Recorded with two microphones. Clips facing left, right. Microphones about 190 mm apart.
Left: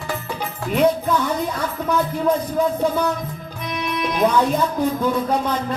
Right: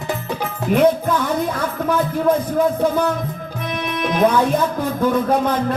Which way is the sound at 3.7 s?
55° right (ahead or behind).